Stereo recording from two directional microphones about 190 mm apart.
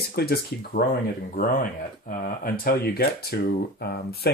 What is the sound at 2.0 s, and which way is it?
Speech, 50° left (ahead or behind).